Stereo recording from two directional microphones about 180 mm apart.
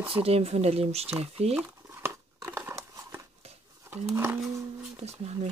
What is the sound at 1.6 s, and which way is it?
Crumpling, 15° right (ahead or behind).